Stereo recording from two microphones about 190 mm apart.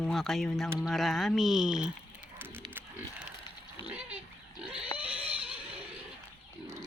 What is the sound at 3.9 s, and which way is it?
Dog, 5° right (ahead or behind).